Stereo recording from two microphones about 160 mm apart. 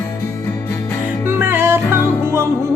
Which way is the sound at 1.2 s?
15° right (ahead or behind).